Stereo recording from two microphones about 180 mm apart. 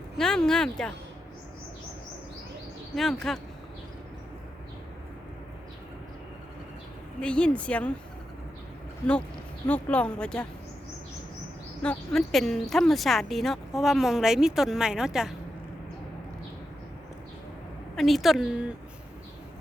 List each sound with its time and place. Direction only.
0.2 s speech: 5° left (ahead or behind)
2.9 s speech: centre (ahead or behind)
7.2 s a woman's voice: 5° left (ahead or behind)
9.6 s a woman's voice: 10° left (ahead or behind)
11.8 s speech: 5° left (ahead or behind)
17.9 s speech: centre (ahead or behind)